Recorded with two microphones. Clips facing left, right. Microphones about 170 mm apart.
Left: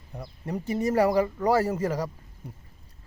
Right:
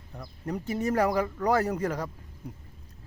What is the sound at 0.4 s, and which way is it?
Speech, 10° left (ahead or behind).